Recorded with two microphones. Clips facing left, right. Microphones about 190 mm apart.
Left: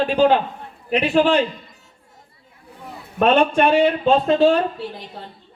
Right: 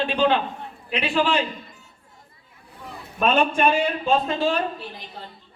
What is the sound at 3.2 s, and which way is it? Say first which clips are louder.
Speech: left 5 dB; 65° left (ahead or behind).